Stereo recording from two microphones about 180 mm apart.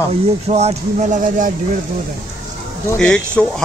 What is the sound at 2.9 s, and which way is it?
Speech, 5° left (ahead or behind).